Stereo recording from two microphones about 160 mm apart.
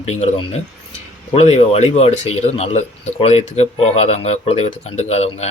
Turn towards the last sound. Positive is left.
turn(degrees=40)  # may be behind; listen again after turning